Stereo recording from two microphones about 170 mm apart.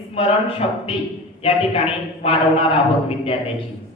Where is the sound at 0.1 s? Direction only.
35° left (ahead or behind).